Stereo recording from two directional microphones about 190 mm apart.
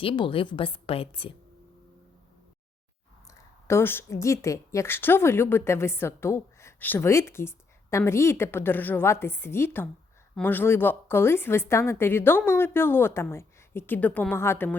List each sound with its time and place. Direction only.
0.0 s a woman's voice: 30° left (ahead or behind)
3.7 s speech: 10° left (ahead or behind)